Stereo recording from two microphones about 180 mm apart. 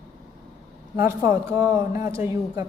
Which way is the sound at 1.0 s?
15° right (ahead or behind).